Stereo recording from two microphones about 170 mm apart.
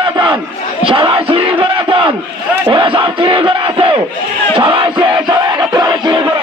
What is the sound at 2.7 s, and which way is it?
Battle cry, 30° right (ahead or behind).